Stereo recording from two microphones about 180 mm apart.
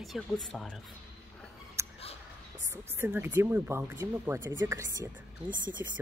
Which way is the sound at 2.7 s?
15° right (ahead or behind).